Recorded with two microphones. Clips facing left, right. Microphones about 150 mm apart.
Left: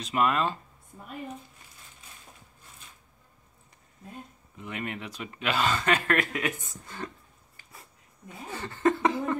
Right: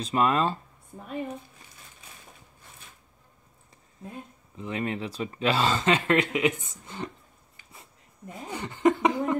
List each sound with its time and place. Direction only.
0.0 s speech: 30° right (ahead or behind)
4.6 s speech: 30° right (ahead or behind)
8.5 s speech: 15° right (ahead or behind)